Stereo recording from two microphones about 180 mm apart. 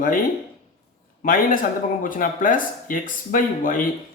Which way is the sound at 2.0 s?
50° left (ahead or behind).